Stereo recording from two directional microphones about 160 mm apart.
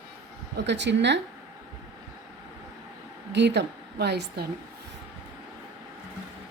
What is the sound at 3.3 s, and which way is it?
A woman's voice, 90° right.